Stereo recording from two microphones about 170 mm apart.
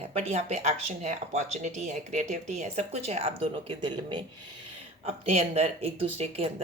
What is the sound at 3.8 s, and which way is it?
Speech, 25° right (ahead or behind).